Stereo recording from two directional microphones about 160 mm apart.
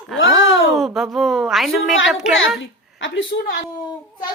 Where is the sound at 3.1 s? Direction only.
90° left.